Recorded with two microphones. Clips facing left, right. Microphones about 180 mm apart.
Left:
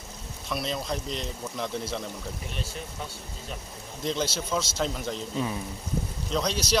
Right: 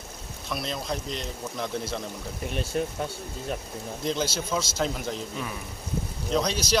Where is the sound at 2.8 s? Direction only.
50° right (ahead or behind).